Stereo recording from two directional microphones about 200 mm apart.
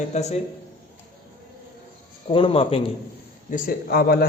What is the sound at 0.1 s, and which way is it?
Speech, 35° left (ahead or behind).